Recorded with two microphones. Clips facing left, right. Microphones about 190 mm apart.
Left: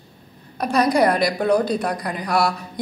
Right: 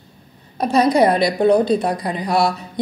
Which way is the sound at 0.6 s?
25° right (ahead or behind).